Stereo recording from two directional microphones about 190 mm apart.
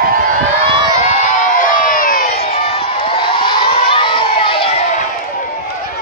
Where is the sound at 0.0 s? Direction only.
50° right (ahead or behind).